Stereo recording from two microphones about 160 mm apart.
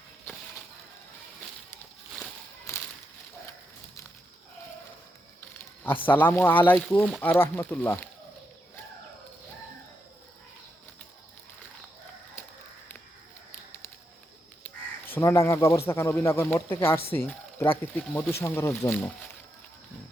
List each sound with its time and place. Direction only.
5.4 s a sound: 10° left (ahead or behind)
6.7 s speech: 10° left (ahead or behind)
14.6 s crow: 15° left (ahead or behind)
15.9 s speech: 15° left (ahead or behind)